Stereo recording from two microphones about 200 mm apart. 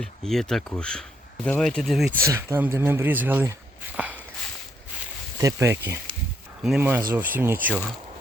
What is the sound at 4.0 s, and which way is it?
Walk, 5° right (ahead or behind).